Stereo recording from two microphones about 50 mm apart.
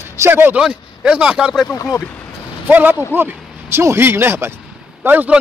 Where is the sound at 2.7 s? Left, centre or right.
Right.